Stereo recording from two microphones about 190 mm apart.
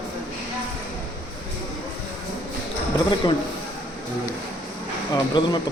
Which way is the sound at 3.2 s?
20° left (ahead or behind).